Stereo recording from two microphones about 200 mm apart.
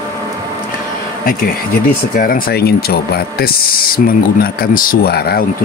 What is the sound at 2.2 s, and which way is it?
Speech, 45° left (ahead or behind).